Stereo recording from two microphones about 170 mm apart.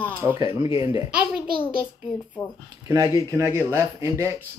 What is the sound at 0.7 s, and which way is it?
Speech, 30° left (ahead or behind).